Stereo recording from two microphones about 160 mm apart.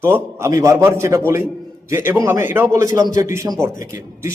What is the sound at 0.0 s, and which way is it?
A man's voice, 15° right (ahead or behind).